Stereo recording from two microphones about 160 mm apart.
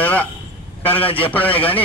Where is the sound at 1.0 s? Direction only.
35° left (ahead or behind).